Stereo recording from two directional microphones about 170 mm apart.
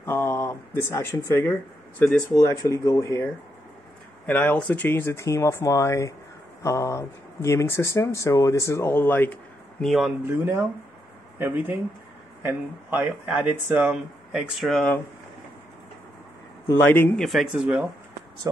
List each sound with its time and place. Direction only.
0.0 s speech: 15° left (ahead or behind)
4.3 s speech: 10° left (ahead or behind)
10.2 s speech: 15° right (ahead or behind); by 15.0 s 5° left (ahead or behind)
16.9 s speech: 10° left (ahead or behind)
17.3 s speech: centre (ahead or behind)